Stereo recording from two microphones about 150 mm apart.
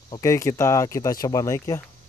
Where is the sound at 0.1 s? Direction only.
20° left (ahead or behind).